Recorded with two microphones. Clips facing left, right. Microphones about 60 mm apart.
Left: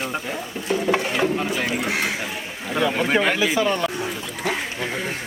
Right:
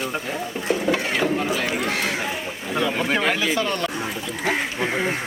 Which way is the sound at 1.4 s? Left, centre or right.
Centre.